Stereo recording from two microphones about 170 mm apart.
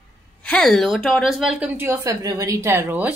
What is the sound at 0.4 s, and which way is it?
A woman's voice, 5° left (ahead or behind).